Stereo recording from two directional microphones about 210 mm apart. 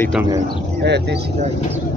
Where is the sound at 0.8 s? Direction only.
55° right (ahead or behind).